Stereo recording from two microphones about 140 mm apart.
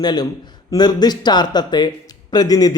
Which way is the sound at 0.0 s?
30° left (ahead or behind).